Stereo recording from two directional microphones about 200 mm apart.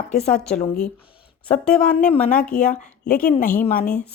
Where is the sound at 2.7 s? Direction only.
40° left (ahead or behind).